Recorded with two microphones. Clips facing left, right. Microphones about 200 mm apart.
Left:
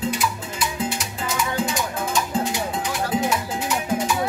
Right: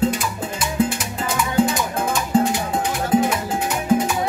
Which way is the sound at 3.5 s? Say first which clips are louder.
Right 5 dB; 55° right (ahead or behind).